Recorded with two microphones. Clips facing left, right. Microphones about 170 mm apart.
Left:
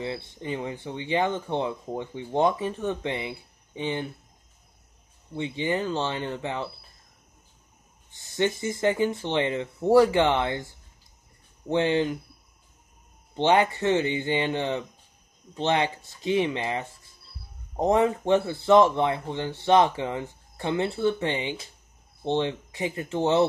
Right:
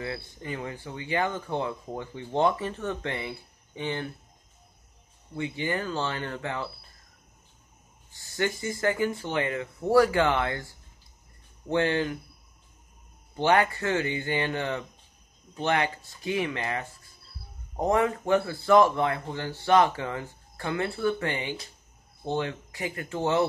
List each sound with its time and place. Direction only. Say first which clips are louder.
0.0 s speech: left 3 dB; 20° left (ahead or behind)
5.3 s speech: left 3 dB; 20° left (ahead or behind)
8.4 s speech: left 3 dB; 20° left (ahead or behind)
11.7 s speech: left 2 dB; 20° left (ahead or behind)
13.4 s speech: left 2 dB; 20° left (ahead or behind)